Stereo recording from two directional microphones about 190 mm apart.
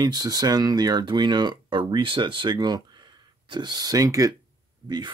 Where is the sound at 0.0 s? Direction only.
20° right (ahead or behind).